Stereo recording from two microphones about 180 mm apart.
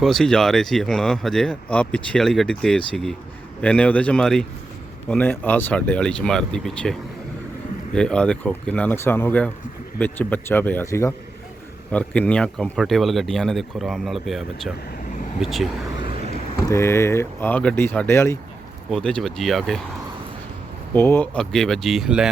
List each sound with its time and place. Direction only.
0.0 s speech: centre (ahead or behind)
7.9 s speech: 5° left (ahead or behind)
16.6 s speech: 15° left (ahead or behind)
18.9 s speech: 5° left (ahead or behind)
20.9 s speech: 10° left (ahead or behind)